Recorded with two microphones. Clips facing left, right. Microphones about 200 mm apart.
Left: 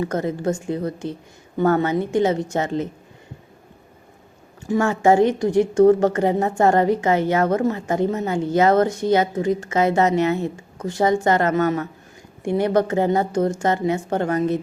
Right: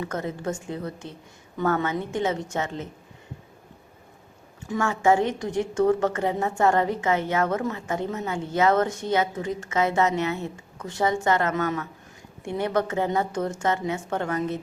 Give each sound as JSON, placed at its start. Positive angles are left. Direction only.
{"t": 0.0, "sound": "a woman's voice", "side_deg": 35}
{"t": 4.7, "sound": "a woman's voice", "side_deg": 35}